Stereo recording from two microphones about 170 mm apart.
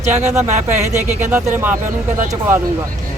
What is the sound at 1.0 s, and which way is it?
Speech, 15° right (ahead or behind).